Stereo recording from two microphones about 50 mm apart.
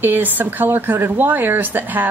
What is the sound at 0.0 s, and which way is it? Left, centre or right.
A woman's voice, right.